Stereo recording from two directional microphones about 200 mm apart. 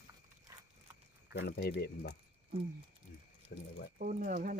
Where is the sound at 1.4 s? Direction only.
55° left (ahead or behind).